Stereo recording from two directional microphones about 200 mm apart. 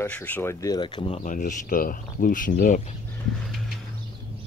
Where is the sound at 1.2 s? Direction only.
40° left (ahead or behind).